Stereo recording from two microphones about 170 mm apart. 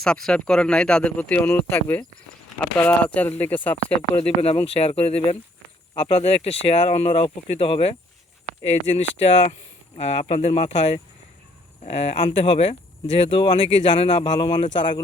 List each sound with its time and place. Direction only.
0.0 s speech: 5° left (ahead or behind)
4.2 s speech: 35° left (ahead or behind)